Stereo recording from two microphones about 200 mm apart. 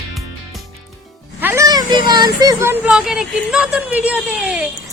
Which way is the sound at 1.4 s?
10° right (ahead or behind).